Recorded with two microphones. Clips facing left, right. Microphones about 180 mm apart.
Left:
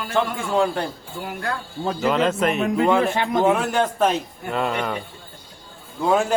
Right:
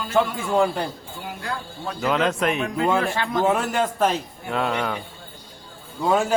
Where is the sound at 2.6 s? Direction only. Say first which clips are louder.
Left 6 dB; 20° left (ahead or behind).